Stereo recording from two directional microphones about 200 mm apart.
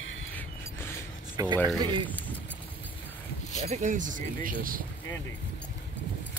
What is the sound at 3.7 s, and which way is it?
Speech, 35° right (ahead or behind).